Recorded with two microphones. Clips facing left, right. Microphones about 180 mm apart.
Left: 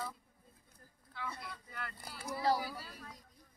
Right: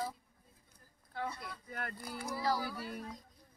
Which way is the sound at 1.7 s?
50° right (ahead or behind).